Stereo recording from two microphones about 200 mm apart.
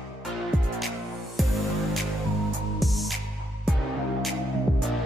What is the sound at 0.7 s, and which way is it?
Music, centre (ahead or behind).